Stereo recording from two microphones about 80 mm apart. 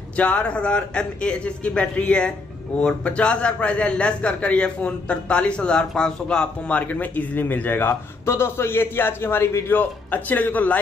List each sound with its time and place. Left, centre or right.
0.1 s a man's voice: centre; by 9.8 s left
9.8 s speech: left